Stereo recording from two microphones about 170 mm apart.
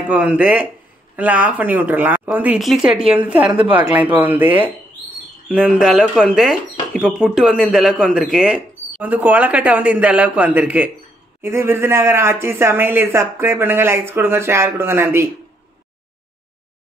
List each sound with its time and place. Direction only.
0.1 s speech: 5° right (ahead or behind)
2.9 s a woman's voice: 35° right (ahead or behind)
3.2 s speech: 10° right (ahead or behind)